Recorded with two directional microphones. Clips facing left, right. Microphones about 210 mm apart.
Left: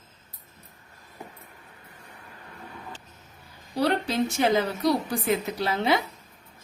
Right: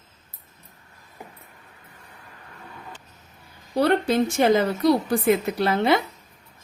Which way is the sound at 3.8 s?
50° right (ahead or behind).